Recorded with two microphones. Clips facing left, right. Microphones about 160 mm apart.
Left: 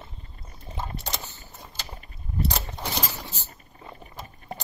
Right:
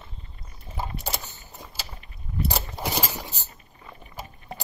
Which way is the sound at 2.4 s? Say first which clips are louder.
Right 3 dB; 10° right (ahead or behind).